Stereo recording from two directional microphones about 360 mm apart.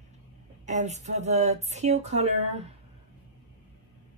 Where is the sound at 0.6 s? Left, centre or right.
Centre.